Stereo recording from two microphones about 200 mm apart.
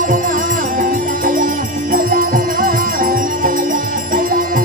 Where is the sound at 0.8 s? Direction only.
45° right (ahead or behind).